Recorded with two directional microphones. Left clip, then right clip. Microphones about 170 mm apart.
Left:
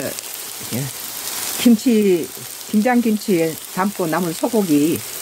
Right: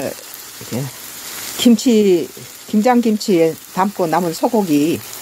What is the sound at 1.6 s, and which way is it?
Speech, 10° right (ahead or behind).